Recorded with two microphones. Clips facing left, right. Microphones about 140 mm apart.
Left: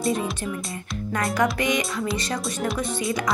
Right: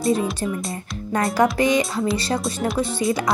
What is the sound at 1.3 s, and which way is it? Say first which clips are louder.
Speech: right 5 dB; 35° right (ahead or behind).